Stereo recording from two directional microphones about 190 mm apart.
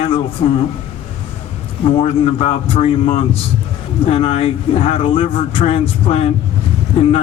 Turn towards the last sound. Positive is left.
turn(degrees=30)  # may be behind; listen again after turning